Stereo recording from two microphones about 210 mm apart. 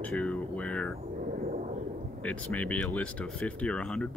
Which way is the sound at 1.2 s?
40° right (ahead or behind).